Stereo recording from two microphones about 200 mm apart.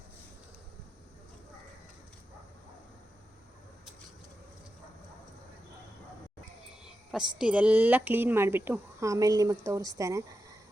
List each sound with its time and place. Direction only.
6.8 s speech: 5° right (ahead or behind)